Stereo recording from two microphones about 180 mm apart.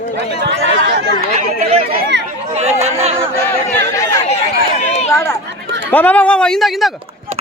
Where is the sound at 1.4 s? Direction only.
35° right (ahead or behind).